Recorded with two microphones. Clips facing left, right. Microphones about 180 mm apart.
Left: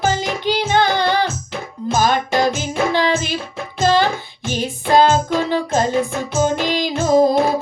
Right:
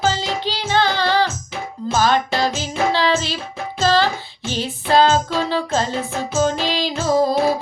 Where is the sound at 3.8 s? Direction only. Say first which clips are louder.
Left 2 dB; 15° left (ahead or behind).